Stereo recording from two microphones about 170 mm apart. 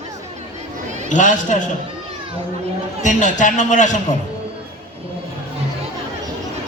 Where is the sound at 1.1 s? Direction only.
45° left (ahead or behind).